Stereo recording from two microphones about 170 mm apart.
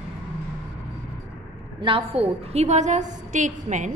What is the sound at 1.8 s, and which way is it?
A woman's voice, 30° right (ahead or behind).